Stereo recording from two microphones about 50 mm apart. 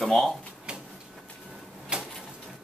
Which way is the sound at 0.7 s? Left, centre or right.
Centre.